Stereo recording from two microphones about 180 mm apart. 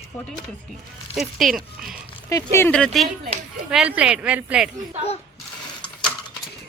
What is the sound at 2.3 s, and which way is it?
Speech, 15° left (ahead or behind).